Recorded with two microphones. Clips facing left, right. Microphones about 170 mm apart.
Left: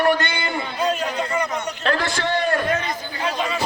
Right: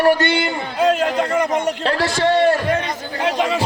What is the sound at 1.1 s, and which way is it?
Speech, 50° right (ahead or behind).